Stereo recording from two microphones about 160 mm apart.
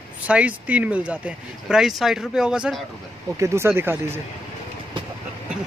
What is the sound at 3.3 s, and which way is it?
Speech, 15° right (ahead or behind).